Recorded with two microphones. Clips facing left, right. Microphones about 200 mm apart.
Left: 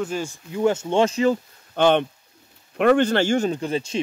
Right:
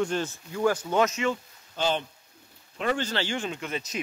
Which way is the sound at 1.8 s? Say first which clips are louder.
Left 10 dB; 65° left (ahead or behind).